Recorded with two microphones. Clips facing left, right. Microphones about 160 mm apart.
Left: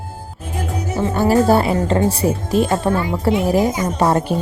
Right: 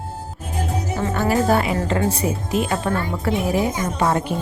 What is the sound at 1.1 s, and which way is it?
A woman's voice, 35° left (ahead or behind).